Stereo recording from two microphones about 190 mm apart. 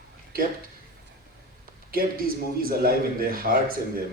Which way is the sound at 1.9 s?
50° right (ahead or behind).